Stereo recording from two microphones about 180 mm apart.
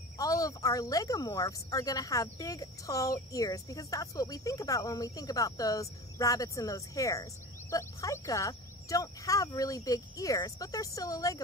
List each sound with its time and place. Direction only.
0.2 s speech: 20° left (ahead or behind)